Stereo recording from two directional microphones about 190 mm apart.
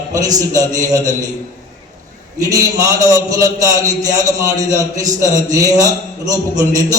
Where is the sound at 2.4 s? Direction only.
20° right (ahead or behind).